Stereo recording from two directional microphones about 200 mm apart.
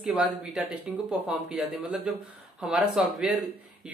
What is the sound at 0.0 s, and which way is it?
Speech, centre (ahead or behind).